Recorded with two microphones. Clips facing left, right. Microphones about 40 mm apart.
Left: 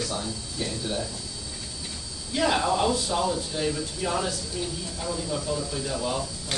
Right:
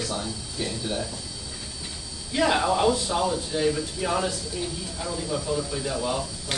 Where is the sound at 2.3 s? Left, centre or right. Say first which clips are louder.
Right 2 dB; centre.